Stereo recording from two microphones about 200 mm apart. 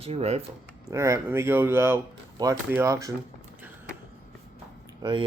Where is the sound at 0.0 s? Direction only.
30° right (ahead or behind).